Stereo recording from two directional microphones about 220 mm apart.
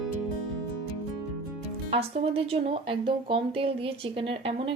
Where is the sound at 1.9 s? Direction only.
25° right (ahead or behind).